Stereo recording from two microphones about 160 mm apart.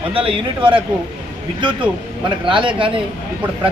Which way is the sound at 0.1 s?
35° right (ahead or behind).